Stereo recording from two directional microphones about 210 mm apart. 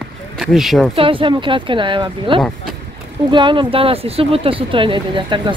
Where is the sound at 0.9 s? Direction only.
25° right (ahead or behind).